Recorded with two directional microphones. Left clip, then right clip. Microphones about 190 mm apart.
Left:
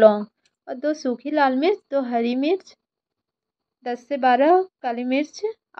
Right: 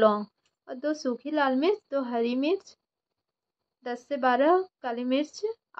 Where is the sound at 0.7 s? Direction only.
15° left (ahead or behind).